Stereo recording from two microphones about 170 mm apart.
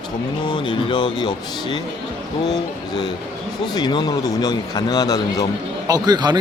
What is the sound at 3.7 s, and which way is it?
A man's voice, 25° left (ahead or behind).